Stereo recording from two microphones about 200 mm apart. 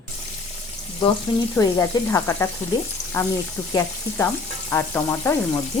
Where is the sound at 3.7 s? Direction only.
10° left (ahead or behind).